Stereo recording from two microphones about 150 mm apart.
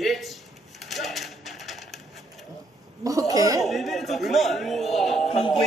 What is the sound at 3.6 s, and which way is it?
Music, centre (ahead or behind).